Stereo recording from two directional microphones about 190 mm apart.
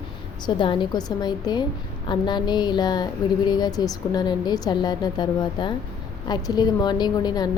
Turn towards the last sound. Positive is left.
turn(degrees=20)  # may be behind; listen again after turning